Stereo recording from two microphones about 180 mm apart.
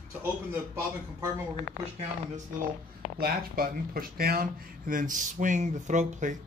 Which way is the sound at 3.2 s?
55° right (ahead or behind).